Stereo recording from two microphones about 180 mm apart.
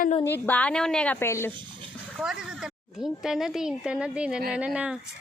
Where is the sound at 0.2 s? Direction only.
10° left (ahead or behind).